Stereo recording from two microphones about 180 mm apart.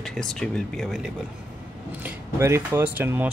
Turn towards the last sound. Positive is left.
turn(degrees=-10)  # may be behind; listen again after turning